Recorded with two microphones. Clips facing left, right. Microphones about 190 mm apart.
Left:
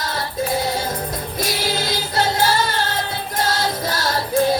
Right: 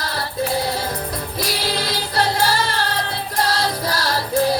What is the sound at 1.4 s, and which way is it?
Music, 25° left (ahead or behind).